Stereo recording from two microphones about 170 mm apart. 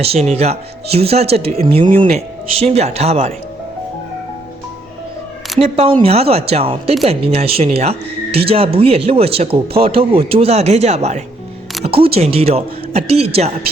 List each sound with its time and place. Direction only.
0.0 s speech: 40° right (ahead or behind)
1.9 s speech: 55° right (ahead or behind)
2.1 s speech: 35° right (ahead or behind)
5.5 s speech: 35° right (ahead or behind)